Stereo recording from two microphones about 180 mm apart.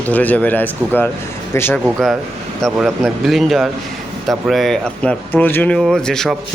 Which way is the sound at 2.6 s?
Centre (ahead or behind).